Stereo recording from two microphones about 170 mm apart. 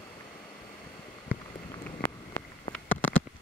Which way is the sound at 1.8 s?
10° left (ahead or behind).